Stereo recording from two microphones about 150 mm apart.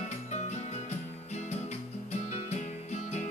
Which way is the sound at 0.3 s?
50° left (ahead or behind).